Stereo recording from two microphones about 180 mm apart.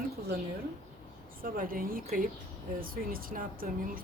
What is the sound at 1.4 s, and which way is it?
Speech, 50° right (ahead or behind).